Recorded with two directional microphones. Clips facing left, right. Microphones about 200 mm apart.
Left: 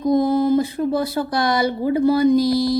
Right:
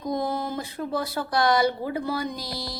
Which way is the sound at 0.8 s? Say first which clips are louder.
Left 10 dB; 30° left (ahead or behind).